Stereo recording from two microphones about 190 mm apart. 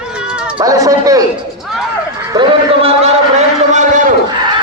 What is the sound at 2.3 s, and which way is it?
Speech, 25° right (ahead or behind).